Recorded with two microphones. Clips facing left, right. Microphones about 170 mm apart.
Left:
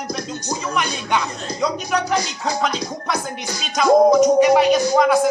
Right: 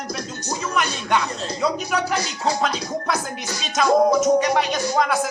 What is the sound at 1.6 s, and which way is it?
Speech, 5° right (ahead or behind).